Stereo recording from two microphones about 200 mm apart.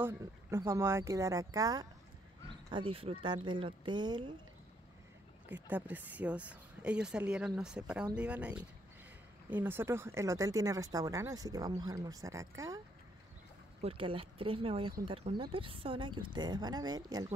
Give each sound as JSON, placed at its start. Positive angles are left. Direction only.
{"t": 0.0, "sound": "speech", "side_deg": -15}
{"t": 5.5, "sound": "speech", "side_deg": -10}
{"t": 13.7, "sound": "speech", "side_deg": -30}